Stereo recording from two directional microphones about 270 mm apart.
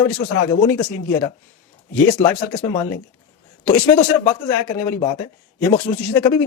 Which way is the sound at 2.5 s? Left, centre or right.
Centre.